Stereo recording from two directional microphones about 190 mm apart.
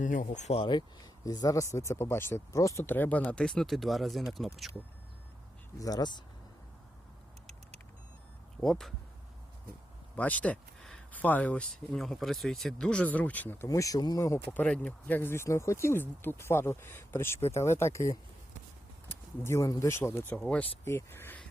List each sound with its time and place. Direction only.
0.0 s speech: 45° left (ahead or behind); by 4.5 s centre (ahead or behind)
5.8 s speech: 20° left (ahead or behind)
8.6 s speech: centre (ahead or behind)
10.2 s speech: 10° left (ahead or behind)